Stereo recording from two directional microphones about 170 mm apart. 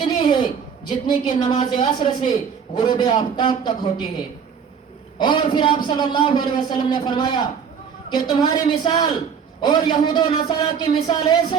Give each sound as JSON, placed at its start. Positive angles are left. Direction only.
{"t": 0.0, "sound": "a sound", "side_deg": 30}
{"t": 1.4, "sound": "a man's voice", "side_deg": 25}
{"t": 5.1, "sound": "a man's voice", "side_deg": 25}